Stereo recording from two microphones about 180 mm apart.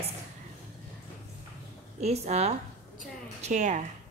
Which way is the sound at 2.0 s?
35° right (ahead or behind).